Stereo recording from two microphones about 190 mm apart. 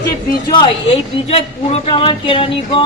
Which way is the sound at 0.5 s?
30° left (ahead or behind).